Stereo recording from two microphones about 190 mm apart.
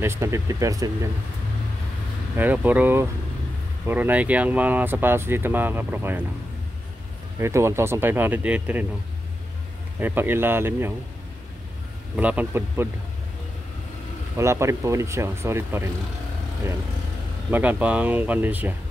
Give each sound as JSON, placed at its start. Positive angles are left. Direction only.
{"t": 0.0, "sound": "speech", "side_deg": -15}
{"t": 2.3, "sound": "speech", "side_deg": -10}
{"t": 7.3, "sound": "speech", "side_deg": -15}
{"t": 9.9, "sound": "speech", "side_deg": -10}
{"t": 12.2, "sound": "speech", "side_deg": -5}
{"t": 14.3, "sound": "speech", "side_deg": -15}
{"t": 17.5, "sound": "speech", "side_deg": -10}